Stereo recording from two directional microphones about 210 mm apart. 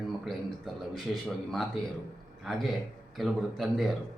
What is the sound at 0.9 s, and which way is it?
A man's voice, centre (ahead or behind).